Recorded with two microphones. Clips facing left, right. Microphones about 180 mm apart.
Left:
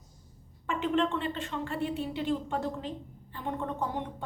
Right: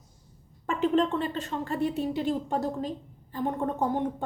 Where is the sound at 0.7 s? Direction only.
35° right (ahead or behind).